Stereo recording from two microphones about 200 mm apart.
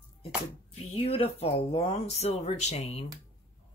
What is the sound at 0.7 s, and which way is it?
Speech, 30° left (ahead or behind).